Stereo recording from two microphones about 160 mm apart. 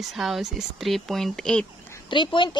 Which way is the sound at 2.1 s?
30° left (ahead or behind).